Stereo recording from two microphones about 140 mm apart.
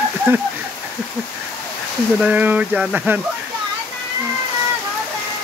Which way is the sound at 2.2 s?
10° right (ahead or behind).